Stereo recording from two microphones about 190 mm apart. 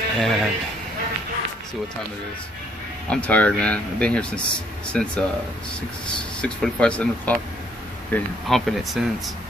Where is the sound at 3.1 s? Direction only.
5° left (ahead or behind).